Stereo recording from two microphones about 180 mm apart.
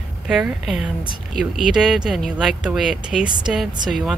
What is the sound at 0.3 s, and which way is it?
Speech, centre (ahead or behind).